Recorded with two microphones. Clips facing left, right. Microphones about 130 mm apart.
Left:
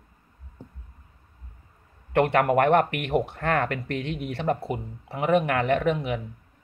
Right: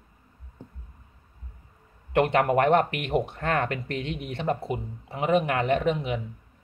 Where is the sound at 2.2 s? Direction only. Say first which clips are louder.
Left 1 dB; 25° right (ahead or behind).